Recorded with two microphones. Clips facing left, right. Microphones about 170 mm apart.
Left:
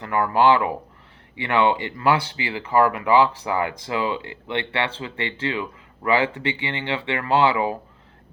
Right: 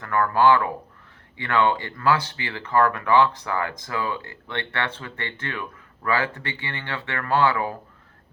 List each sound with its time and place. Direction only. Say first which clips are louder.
0.0 s speech: left 1 dB; 15° left (ahead or behind)